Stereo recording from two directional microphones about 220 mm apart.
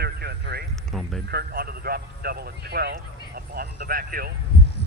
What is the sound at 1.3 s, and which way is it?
A man's voice, 45° right (ahead or behind).